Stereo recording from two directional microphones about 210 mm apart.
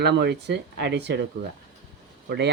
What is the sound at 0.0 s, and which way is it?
Speech, 50° right (ahead or behind).